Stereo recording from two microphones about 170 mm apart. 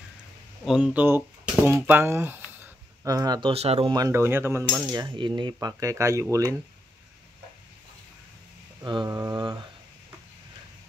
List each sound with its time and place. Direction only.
0.7 s speech: 5° right (ahead or behind); by 3.9 s 35° right (ahead or behind)
3.9 s cutlery: 15° right (ahead or behind)
8.8 s cutlery: 25° right (ahead or behind)